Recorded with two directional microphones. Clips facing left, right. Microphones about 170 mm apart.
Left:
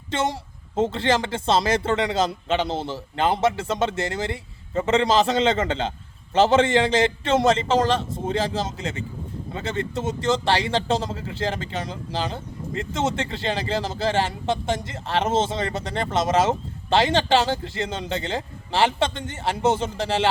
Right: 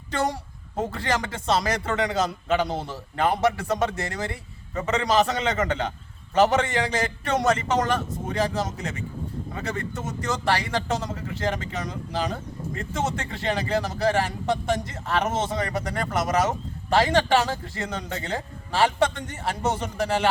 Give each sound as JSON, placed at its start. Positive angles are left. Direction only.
{"t": 0.1, "sound": "a woman's voice", "side_deg": 25}